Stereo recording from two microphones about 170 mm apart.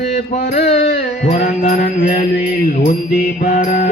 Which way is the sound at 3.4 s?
50° left (ahead or behind).